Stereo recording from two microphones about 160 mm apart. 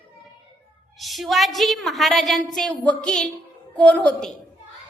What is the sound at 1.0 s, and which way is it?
A woman's voice, centre (ahead or behind).